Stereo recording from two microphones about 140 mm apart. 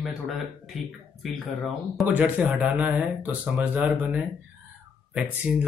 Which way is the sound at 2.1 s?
10° right (ahead or behind).